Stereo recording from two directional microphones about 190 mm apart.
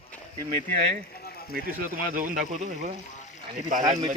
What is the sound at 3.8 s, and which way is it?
Speech, 20° right (ahead or behind).